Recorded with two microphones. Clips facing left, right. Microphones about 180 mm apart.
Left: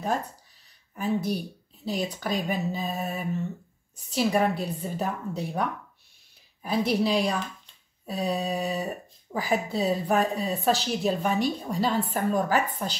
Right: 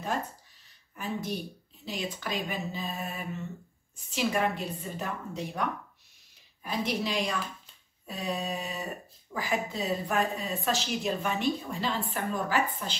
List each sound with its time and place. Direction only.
0.9 s a woman's voice: 35° left (ahead or behind)
6.6 s a woman's voice: 35° left (ahead or behind)